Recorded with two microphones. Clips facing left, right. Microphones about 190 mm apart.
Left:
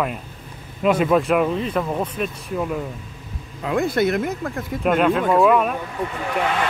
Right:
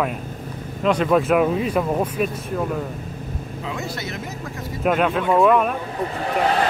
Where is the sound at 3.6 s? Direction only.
55° left (ahead or behind).